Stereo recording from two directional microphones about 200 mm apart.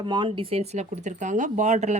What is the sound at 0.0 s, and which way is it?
Speech, 25° right (ahead or behind).